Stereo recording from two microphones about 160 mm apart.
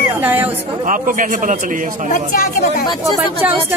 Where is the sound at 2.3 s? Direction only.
60° left (ahead or behind).